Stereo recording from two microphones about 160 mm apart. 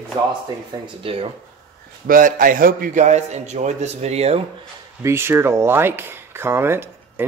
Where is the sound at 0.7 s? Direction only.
30° right (ahead or behind).